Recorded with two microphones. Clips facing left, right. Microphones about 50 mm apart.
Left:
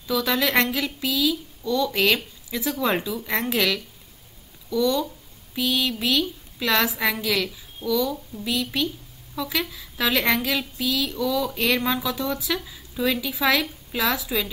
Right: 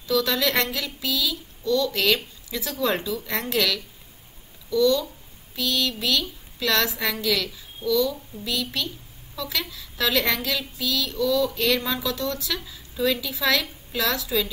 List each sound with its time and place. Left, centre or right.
0.0 s a woman's voice: centre